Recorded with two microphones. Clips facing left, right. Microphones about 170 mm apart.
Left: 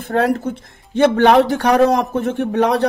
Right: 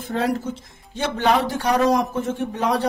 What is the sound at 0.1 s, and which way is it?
Speech, 60° left (ahead or behind).